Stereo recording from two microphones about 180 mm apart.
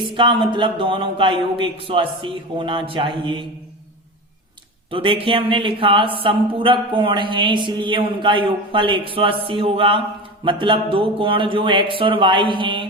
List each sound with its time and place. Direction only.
0.0 s speech: 25° right (ahead or behind)
4.9 s speech: 30° right (ahead or behind)